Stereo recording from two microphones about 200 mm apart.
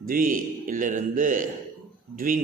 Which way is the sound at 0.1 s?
45° right (ahead or behind).